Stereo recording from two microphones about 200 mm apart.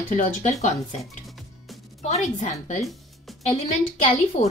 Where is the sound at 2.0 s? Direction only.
35° left (ahead or behind).